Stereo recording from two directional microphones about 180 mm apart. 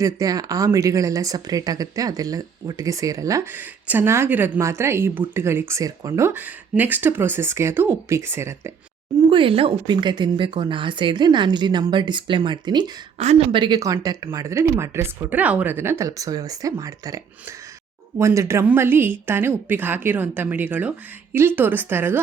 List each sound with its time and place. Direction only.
0.0 s speech: 20° right (ahead or behind)
9.3 s speech: 30° right (ahead or behind)
13.1 s speech: 35° right (ahead or behind); by 17.2 s 20° right (ahead or behind)
18.2 s speech: 15° right (ahead or behind)